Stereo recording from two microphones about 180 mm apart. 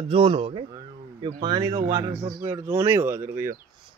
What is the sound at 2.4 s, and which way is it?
Speech, 15° right (ahead or behind).